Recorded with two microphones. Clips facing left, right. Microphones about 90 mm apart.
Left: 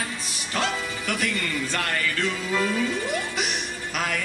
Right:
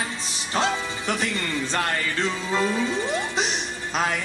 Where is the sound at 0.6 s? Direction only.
25° right (ahead or behind).